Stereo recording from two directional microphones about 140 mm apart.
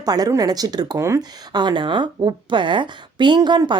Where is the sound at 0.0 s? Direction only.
30° right (ahead or behind).